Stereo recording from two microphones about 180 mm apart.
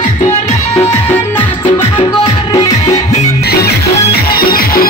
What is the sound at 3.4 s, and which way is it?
Music, 60° left (ahead or behind).